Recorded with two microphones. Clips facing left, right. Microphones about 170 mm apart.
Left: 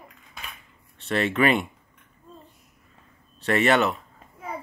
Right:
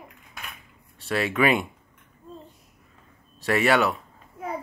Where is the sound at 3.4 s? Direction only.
10° right (ahead or behind).